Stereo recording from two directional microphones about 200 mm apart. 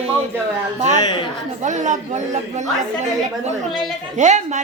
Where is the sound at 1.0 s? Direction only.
20° left (ahead or behind).